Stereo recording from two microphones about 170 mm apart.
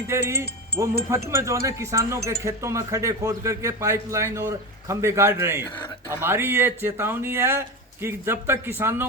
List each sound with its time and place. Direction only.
0.1 s speech: 15° right (ahead or behind)